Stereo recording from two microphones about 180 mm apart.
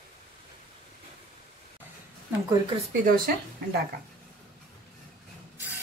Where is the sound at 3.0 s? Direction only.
60° right (ahead or behind).